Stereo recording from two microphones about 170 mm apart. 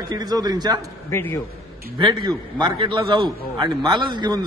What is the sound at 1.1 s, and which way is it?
Speech, 15° left (ahead or behind).